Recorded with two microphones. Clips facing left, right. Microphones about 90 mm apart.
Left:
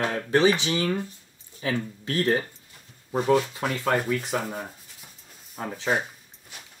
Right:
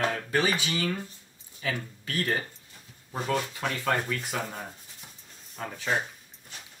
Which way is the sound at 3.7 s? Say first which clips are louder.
Left 4 dB; 15° left (ahead or behind).